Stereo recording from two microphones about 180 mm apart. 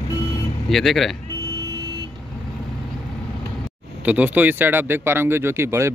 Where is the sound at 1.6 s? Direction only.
20° right (ahead or behind).